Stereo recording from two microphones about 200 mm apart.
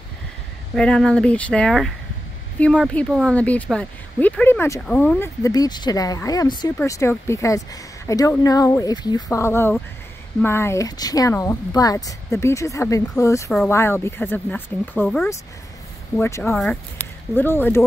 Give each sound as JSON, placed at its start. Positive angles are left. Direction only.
{"t": 0.7, "sound": "speech", "side_deg": 5}
{"t": 16.2, "sound": "speech", "side_deg": 15}